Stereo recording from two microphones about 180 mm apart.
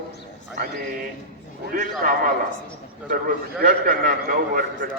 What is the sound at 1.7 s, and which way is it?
A man's voice, 50° right (ahead or behind).